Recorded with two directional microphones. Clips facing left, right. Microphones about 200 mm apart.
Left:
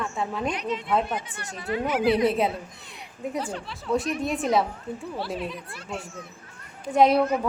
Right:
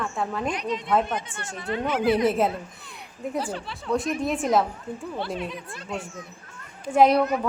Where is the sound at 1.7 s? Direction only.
25° right (ahead or behind).